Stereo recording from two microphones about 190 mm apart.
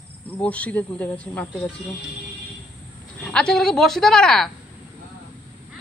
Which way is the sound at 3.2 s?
5° left (ahead or behind).